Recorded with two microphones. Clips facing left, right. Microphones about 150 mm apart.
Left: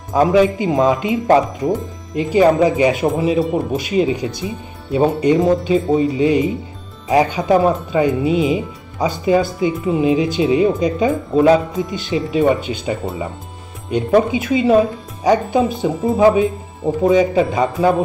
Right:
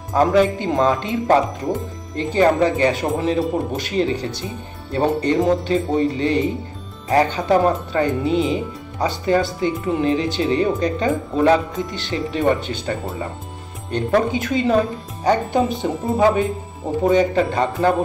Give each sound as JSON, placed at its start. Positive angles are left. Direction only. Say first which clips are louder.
{"t": 0.1, "sound": "speech", "louder": "left 2 dB", "side_deg": 5}